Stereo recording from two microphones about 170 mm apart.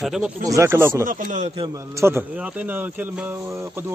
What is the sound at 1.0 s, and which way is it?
Speech, 50° right (ahead or behind).